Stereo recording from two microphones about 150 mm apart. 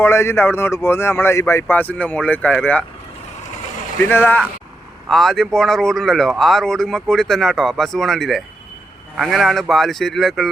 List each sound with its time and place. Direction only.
0.0 s speech: 15° left (ahead or behind)
4.1 s speech: 15° left (ahead or behind)
5.0 s speech: centre (ahead or behind)